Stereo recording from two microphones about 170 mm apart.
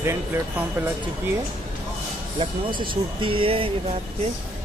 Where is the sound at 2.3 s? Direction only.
30° right (ahead or behind).